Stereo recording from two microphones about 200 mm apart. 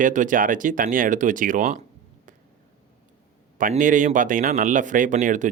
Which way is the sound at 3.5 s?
40° right (ahead or behind).